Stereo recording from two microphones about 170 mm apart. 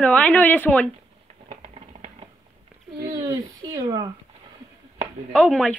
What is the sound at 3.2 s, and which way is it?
Speech, 20° right (ahead or behind).